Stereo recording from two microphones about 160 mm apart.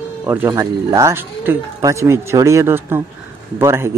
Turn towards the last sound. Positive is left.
turn(degrees=-15)  # may be behind; listen again after turning